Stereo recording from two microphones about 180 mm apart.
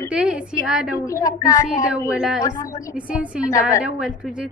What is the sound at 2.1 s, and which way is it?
Speech, 5° right (ahead or behind).